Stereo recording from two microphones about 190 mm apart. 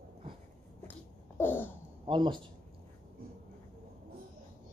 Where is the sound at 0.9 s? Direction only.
10° left (ahead or behind).